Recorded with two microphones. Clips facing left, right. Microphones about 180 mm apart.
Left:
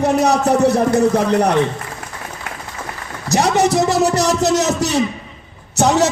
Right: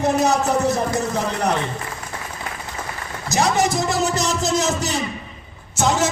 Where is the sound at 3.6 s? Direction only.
70° left (ahead or behind).